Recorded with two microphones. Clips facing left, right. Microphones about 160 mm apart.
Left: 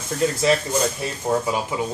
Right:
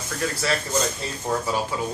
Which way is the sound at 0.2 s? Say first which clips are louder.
Left 7 dB; 20° left (ahead or behind).